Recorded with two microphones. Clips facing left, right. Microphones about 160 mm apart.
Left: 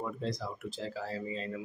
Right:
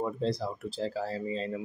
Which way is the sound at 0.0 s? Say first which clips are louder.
Right 6 dB; 30° right (ahead or behind).